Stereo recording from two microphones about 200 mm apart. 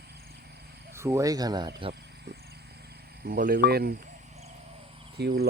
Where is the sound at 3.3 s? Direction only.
45° right (ahead or behind).